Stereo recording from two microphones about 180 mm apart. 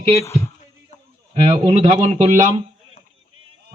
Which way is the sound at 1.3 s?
35° right (ahead or behind).